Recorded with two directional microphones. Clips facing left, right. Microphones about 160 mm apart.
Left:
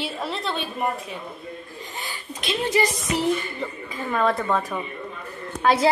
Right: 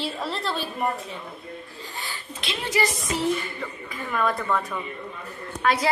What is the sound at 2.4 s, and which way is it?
Speech, 20° left (ahead or behind).